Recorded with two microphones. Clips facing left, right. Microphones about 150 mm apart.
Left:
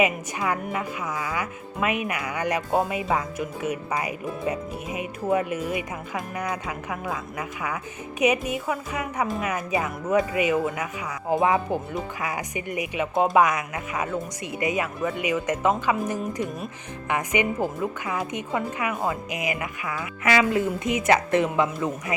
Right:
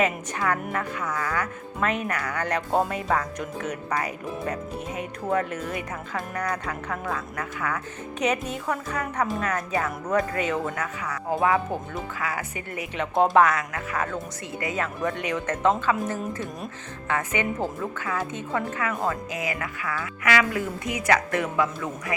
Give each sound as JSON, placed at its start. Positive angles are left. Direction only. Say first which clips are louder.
{"t": 0.0, "sound": "speech", "louder": "left 1 dB", "side_deg": 10}
{"t": 13.1, "sound": "speech", "louder": "right 1 dB", "side_deg": 0}
{"t": 13.4, "sound": "speech", "louder": "even", "side_deg": 15}